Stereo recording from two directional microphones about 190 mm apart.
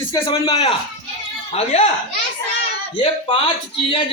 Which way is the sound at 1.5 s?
35° left (ahead or behind).